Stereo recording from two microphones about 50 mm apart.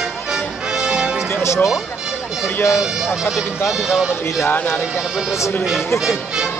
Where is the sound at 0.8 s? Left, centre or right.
Centre.